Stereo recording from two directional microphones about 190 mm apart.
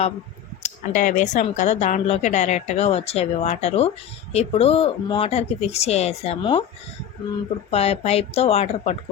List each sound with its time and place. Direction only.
0.6 s speech: 40° left (ahead or behind)
7.7 s speech: 30° left (ahead or behind)